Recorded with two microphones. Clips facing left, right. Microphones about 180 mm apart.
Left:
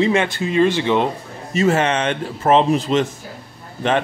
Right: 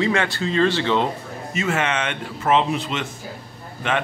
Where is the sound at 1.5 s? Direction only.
35° left (ahead or behind).